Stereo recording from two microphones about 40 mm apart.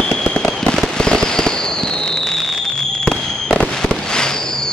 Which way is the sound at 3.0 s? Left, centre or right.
Centre.